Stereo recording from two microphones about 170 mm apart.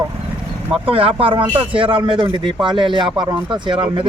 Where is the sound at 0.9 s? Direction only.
35° right (ahead or behind).